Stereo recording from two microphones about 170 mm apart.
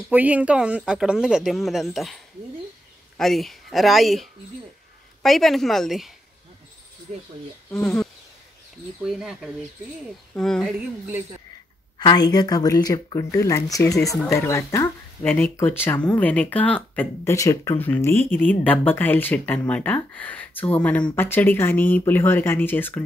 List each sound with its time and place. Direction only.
0.1 s speech: 10° right (ahead or behind)
7.1 s speech: 45° right (ahead or behind)
7.7 s speech: 5° left (ahead or behind)
12.0 s speech: 25° left (ahead or behind)